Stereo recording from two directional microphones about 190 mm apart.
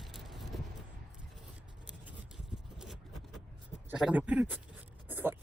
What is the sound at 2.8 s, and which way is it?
Vehicle, centre (ahead or behind).